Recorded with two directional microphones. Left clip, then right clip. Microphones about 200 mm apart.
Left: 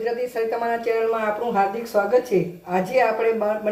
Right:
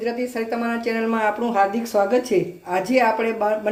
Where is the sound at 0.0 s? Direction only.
30° right (ahead or behind).